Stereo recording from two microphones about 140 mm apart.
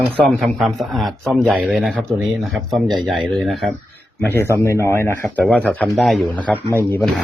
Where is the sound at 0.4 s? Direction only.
Centre (ahead or behind).